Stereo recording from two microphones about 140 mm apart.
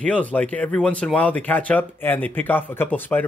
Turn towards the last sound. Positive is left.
turn(degrees=10)  # may be behind; listen again after turning